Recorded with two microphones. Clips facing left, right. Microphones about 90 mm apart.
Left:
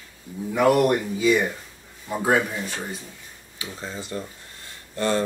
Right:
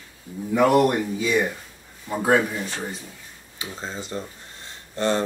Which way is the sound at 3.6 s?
25° right (ahead or behind).